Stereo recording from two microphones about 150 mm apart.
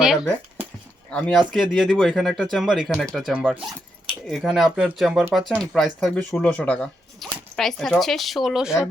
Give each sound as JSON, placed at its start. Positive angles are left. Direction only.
{"t": 0.0, "sound": "speech", "side_deg": -5}